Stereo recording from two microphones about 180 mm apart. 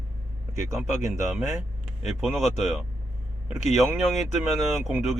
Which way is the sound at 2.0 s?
Centre (ahead or behind).